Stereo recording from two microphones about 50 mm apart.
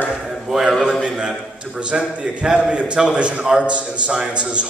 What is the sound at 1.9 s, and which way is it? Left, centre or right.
A man's voice, centre.